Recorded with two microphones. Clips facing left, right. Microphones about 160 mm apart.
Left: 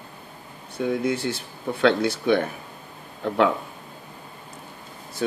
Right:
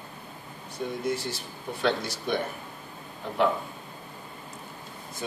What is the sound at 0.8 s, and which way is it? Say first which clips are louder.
Speech: left 6 dB; 70° left (ahead or behind).